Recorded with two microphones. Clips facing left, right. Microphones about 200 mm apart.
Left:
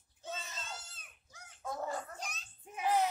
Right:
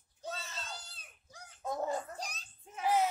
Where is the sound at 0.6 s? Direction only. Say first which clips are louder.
Even; 35° right (ahead or behind).